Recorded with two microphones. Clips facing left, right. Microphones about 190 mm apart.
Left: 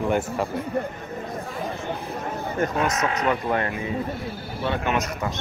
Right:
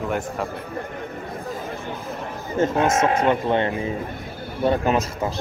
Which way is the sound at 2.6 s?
25° right (ahead or behind).